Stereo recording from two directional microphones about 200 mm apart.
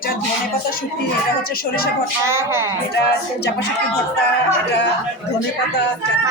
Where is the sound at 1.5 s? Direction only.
50° left (ahead or behind).